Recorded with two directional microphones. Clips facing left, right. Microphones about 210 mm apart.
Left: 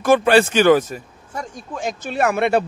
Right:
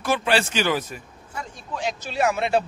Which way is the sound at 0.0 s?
50° left (ahead or behind).